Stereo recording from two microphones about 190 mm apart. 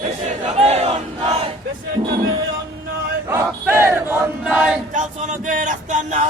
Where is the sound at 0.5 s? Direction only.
30° right (ahead or behind).